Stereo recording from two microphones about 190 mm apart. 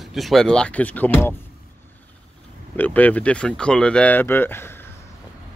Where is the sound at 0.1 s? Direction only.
Centre (ahead or behind).